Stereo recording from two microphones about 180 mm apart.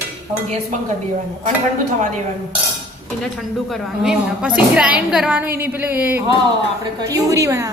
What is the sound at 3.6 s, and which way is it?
A woman's voice, 5° right (ahead or behind).